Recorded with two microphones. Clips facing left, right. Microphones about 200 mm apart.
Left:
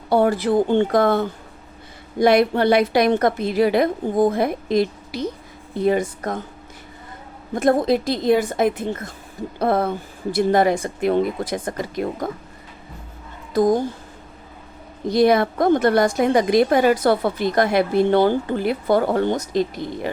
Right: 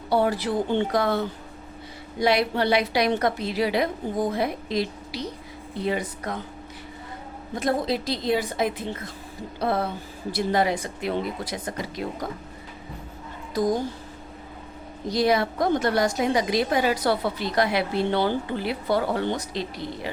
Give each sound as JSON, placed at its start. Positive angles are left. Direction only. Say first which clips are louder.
{"t": 0.1, "sound": "a woman's voice", "louder": "left 6 dB", "side_deg": 50}
{"t": 7.5, "sound": "a woman's voice", "louder": "left 7 dB", "side_deg": 50}
{"t": 13.5, "sound": "a woman's voice", "louder": "left 6 dB", "side_deg": 55}
{"t": 15.0, "sound": "a woman's voice", "louder": "left 6 dB", "side_deg": 55}